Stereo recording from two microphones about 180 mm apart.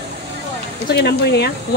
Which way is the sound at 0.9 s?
65° left (ahead or behind).